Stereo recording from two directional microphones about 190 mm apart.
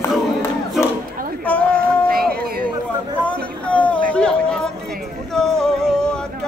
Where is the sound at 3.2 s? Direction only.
5° left (ahead or behind).